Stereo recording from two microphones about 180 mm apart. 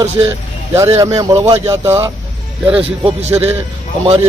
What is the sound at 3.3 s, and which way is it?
Speech, 10° right (ahead or behind).